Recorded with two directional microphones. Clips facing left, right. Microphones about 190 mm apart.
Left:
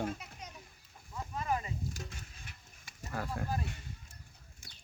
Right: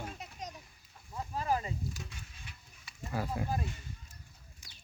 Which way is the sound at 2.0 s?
45° left (ahead or behind).